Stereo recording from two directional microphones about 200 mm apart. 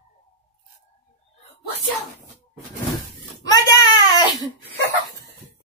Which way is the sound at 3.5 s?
20° left (ahead or behind).